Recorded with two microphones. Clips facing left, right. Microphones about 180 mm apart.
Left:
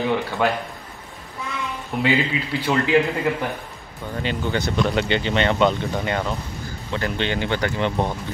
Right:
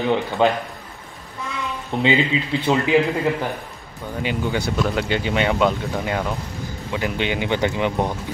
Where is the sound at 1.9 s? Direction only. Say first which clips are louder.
Right 2 dB; 25° right (ahead or behind).